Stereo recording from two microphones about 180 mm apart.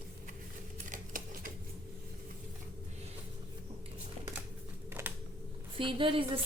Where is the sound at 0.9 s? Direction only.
50° right (ahead or behind).